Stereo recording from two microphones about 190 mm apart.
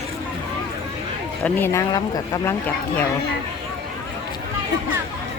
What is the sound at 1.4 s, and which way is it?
Speech, 10° left (ahead or behind).